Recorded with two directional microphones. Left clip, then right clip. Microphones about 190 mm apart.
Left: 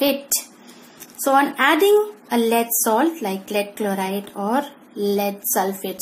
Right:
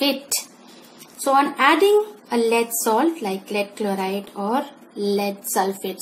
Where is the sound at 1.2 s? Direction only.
20° left (ahead or behind).